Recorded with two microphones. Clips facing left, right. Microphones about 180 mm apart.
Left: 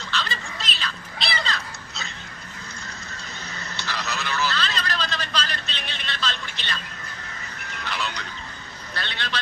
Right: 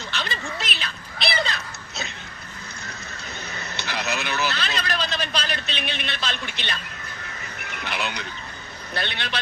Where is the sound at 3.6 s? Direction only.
60° right (ahead or behind).